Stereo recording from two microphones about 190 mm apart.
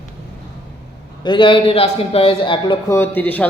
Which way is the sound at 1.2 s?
25° left (ahead or behind).